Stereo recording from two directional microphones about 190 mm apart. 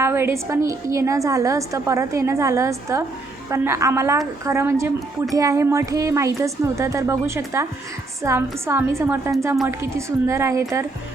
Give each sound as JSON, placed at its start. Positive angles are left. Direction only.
{"t": 0.0, "sound": "a woman's voice", "side_deg": -10}